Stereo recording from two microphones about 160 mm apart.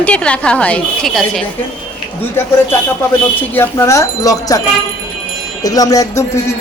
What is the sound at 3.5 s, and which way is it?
Speech, 15° left (ahead or behind).